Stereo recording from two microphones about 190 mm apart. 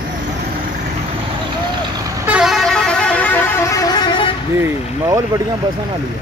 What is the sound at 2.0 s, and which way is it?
Vehicle, 5° right (ahead or behind).